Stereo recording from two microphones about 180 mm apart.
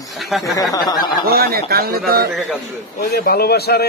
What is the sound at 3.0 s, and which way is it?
Speech, 60° left (ahead or behind).